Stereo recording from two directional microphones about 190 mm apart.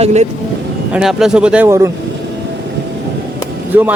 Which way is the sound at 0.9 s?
Centre (ahead or behind).